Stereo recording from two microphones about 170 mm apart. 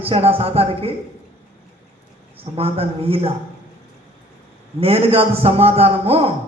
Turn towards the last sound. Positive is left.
turn(degrees=-35)  # may be behind; listen again after turning